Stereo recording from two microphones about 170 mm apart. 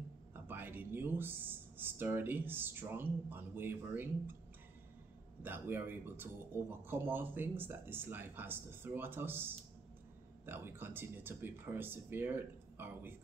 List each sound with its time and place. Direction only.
0.3 s speech: 10° right (ahead or behind)
5.4 s speech: 10° right (ahead or behind)